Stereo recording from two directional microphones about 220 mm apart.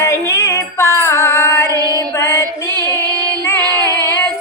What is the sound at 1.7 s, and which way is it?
Female singing, 15° right (ahead or behind).